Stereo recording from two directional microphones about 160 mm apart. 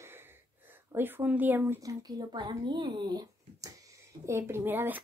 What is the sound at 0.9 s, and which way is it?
A woman's voice, 15° right (ahead or behind).